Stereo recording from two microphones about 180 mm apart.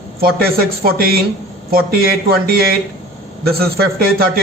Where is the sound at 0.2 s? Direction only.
55° right (ahead or behind).